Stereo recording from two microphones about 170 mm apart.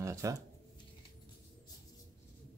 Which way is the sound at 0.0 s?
20° right (ahead or behind).